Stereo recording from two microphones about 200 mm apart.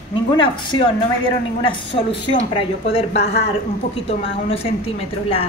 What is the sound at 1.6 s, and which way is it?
A woman's voice, 25° left (ahead or behind).